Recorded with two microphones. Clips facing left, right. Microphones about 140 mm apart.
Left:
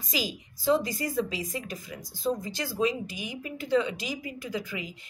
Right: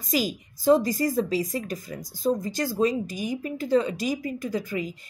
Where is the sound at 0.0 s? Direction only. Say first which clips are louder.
Right 6 dB; 45° right (ahead or behind).